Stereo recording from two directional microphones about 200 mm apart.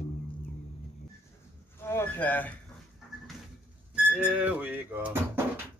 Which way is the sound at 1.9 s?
10° left (ahead or behind).